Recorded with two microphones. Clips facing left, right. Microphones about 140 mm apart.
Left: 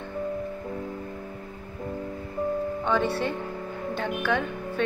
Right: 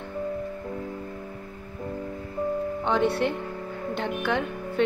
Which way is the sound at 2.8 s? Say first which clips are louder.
Right 3 dB; 15° right (ahead or behind).